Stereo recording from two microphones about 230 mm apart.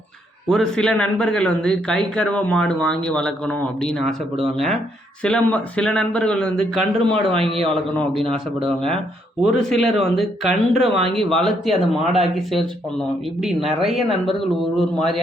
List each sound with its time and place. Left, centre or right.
0.4 s speech: centre
7.2 s a man's voice: right
7.7 s speech: centre
9.4 s speech: centre